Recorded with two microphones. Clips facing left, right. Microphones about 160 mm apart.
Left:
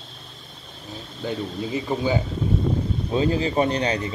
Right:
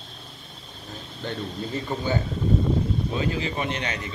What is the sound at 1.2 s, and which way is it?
Speech, 10° left (ahead or behind).